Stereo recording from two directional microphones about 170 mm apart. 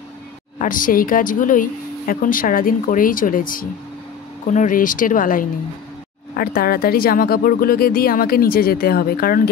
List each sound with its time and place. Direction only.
0.6 s speech: 55° left (ahead or behind)